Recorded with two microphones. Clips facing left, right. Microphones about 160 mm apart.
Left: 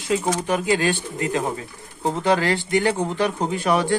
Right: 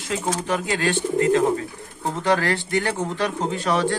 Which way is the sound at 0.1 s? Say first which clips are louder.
Left 3 dB; 15° left (ahead or behind).